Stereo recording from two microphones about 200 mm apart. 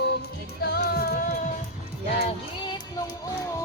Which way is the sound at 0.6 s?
50° left (ahead or behind).